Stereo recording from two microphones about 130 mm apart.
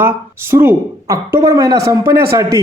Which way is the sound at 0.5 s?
20° right (ahead or behind).